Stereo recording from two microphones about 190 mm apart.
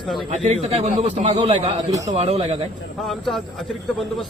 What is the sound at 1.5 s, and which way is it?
Speech, 15° right (ahead or behind).